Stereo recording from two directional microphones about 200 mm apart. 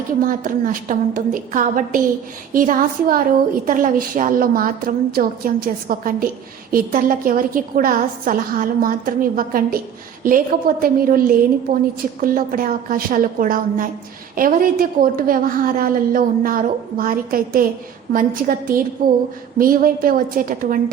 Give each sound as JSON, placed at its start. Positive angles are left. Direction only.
{"t": 0.3, "sound": "a woman's voice", "side_deg": -45}